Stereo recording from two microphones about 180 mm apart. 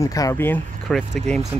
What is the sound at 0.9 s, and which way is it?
Speech, centre (ahead or behind).